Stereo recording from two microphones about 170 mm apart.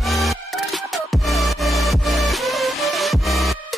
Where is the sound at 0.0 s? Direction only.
Centre (ahead or behind).